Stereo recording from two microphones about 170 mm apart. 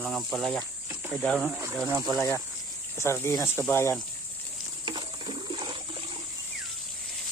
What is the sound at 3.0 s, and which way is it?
Speech, 15° left (ahead or behind).